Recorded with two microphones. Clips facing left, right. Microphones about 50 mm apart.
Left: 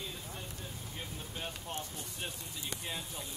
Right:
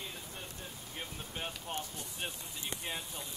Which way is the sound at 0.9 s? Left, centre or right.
Right.